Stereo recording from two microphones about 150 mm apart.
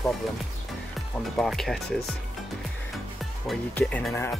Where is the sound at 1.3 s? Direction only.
5° left (ahead or behind).